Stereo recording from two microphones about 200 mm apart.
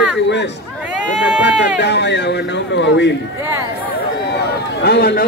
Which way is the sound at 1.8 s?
60° left (ahead or behind).